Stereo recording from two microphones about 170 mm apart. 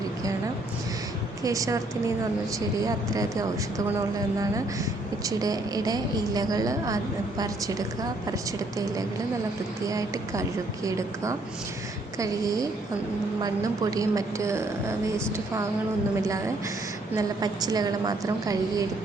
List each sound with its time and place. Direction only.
1.5 s a woman's voice: 20° right (ahead or behind)
5.2 s a woman's voice: 20° right (ahead or behind)
9.8 s a woman's voice: 20° right (ahead or behind)